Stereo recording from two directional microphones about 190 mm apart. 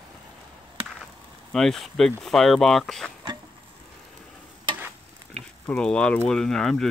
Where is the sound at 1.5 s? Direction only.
Centre (ahead or behind).